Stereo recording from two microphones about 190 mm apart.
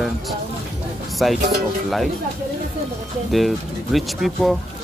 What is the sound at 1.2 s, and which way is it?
Speech, centre (ahead or behind).